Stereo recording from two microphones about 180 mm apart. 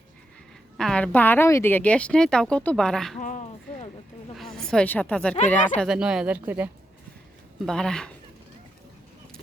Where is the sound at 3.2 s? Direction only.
45° left (ahead or behind).